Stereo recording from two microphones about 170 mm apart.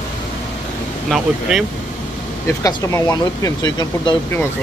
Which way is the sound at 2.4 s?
20° left (ahead or behind).